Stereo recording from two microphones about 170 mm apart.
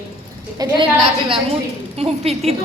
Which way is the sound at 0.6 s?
25° right (ahead or behind).